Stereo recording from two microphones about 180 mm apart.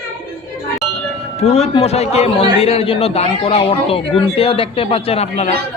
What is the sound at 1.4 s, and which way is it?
A man's voice, 35° left (ahead or behind).